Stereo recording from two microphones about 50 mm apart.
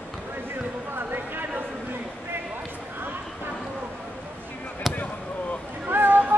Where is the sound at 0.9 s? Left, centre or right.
Right.